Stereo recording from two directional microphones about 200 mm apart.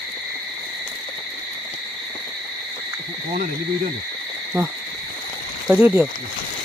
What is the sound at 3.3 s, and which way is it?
Speech, 40° right (ahead or behind).